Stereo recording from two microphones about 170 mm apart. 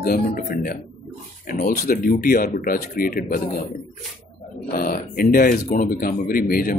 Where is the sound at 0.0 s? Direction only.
60° left (ahead or behind).